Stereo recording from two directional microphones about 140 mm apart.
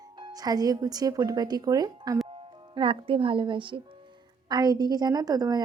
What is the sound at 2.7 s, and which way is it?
A woman's voice, 40° right (ahead or behind).